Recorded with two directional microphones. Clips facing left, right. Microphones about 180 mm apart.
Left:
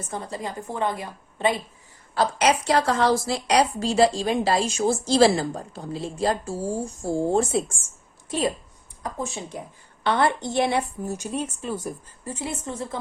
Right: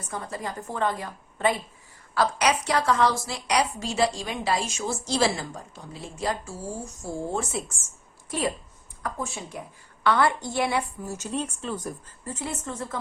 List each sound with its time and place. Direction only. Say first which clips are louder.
0.1 s a woman's voice: left 1 dB; 25° left (ahead or behind)
9.0 s a woman's voice: left 2 dB; 20° left (ahead or behind)